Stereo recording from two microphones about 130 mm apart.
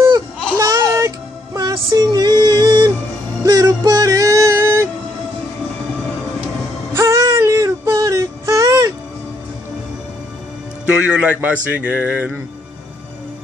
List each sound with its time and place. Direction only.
0.6 s music: 25° right (ahead or behind)
7.0 s a sound: 20° right (ahead or behind)
8.0 s music: 20° right (ahead or behind)
10.9 s speech: 5° right (ahead or behind)